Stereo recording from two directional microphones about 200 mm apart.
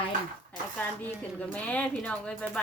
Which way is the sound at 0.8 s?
5° left (ahead or behind).